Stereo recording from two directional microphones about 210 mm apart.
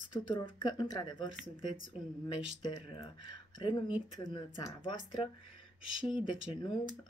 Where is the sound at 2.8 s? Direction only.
25° left (ahead or behind).